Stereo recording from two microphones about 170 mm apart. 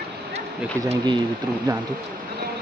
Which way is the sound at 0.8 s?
20° right (ahead or behind).